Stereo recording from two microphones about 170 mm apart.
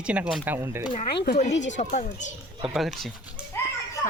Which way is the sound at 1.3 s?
40° left (ahead or behind).